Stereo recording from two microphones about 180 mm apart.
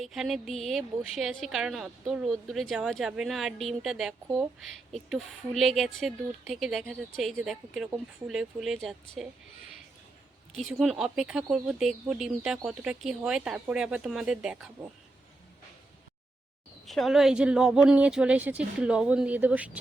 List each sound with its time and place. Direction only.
0.0 s a woman's voice: centre (ahead or behind)
10.6 s a woman's voice: centre (ahead or behind)
16.8 s a woman's voice: centre (ahead or behind)